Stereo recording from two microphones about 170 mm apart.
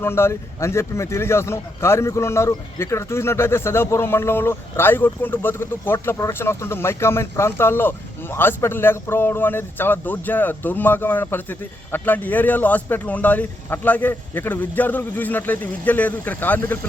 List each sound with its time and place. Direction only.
0.0 s a man's voice: 15° left (ahead or behind)